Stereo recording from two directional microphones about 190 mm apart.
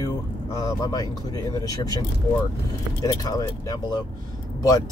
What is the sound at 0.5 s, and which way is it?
Speech, 20° left (ahead or behind).